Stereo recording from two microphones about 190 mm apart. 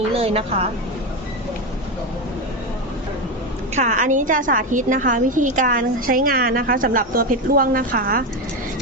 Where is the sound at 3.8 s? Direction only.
40° right (ahead or behind).